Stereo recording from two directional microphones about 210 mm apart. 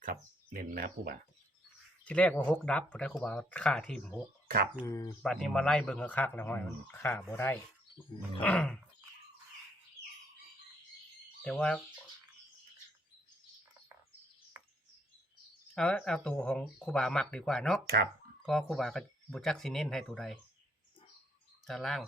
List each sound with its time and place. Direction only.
0.0 s a sound: 40° right (ahead or behind)
2.0 s speech: 5° left (ahead or behind)
4.4 s speech: 45° right (ahead or behind)
4.9 s speech: 15° left (ahead or behind)
5.2 s speech: centre (ahead or behind)
11.4 s speech: 5° left (ahead or behind)
14.5 s a sound: 10° right (ahead or behind)
15.7 s speech: 5° left (ahead or behind)
21.7 s speech: centre (ahead or behind)